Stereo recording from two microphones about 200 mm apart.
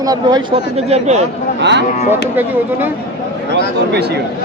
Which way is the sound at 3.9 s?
55° right (ahead or behind).